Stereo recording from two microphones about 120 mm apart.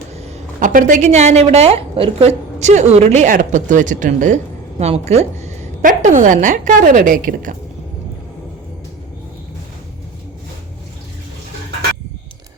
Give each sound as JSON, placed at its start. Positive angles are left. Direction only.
{"t": 0.1, "sound": "a woman's voice", "side_deg": -65}
{"t": 4.8, "sound": "a woman's voice", "side_deg": -65}